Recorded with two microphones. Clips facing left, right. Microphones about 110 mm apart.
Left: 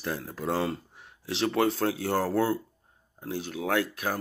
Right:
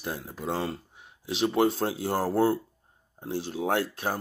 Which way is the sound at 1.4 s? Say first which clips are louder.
Right 1 dB; 20° right (ahead or behind).